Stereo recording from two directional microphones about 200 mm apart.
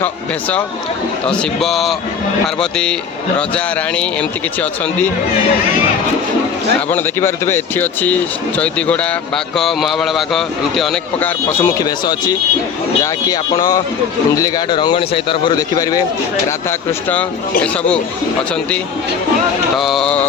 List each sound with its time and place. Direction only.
1.3 s a man's voice: centre (ahead or behind)
6.9 s a man's voice: 15° left (ahead or behind)
17.6 s a man's voice: 5° left (ahead or behind)
19.8 s a man's voice: centre (ahead or behind)